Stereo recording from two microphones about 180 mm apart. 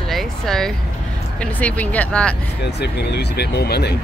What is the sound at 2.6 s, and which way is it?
Speech, 65° left (ahead or behind).